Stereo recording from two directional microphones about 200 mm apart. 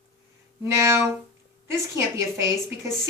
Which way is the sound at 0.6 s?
15° right (ahead or behind).